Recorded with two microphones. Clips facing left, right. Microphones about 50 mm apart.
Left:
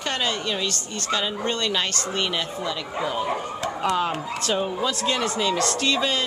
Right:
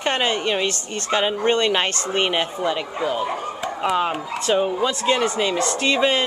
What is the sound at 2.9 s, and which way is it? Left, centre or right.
Speech, centre.